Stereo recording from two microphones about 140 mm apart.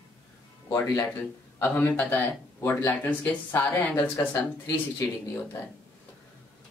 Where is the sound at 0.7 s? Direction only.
20° left (ahead or behind).